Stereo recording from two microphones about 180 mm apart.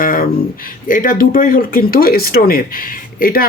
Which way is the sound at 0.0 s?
50° left (ahead or behind).